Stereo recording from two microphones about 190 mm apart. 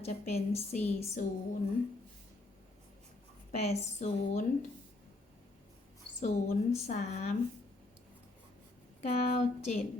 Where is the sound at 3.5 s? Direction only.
35° left (ahead or behind).